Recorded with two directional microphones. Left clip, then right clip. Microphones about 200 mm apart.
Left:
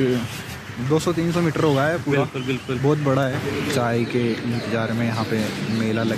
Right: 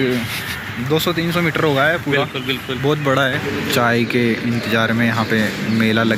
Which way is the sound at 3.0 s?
5° left (ahead or behind).